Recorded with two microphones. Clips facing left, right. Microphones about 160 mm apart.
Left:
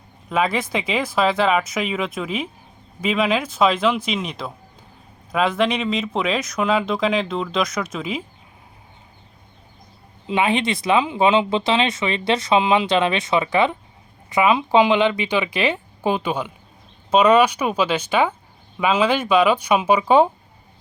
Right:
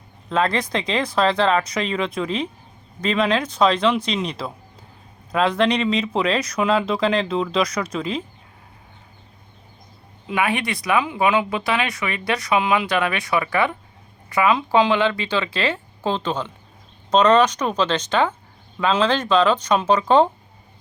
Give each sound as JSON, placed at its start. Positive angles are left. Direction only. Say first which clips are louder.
{"t": 0.3, "sound": "speech", "louder": "even", "side_deg": 5}
{"t": 10.2, "sound": "speech", "louder": "left 3 dB", "side_deg": 20}